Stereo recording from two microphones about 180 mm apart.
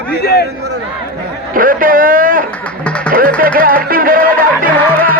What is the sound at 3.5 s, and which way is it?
Music, 50° right (ahead or behind).